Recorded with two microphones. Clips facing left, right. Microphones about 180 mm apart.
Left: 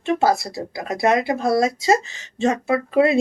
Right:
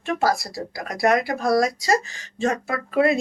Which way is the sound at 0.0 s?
25° left (ahead or behind).